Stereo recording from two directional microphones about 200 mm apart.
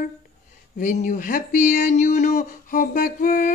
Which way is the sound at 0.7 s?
40° left (ahead or behind).